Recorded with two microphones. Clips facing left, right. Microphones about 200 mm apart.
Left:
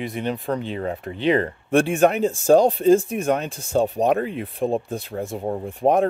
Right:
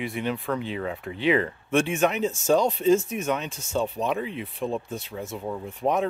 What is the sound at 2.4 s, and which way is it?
Speech, 35° left (ahead or behind).